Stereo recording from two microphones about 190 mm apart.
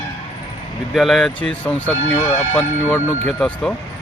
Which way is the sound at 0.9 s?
Centre (ahead or behind).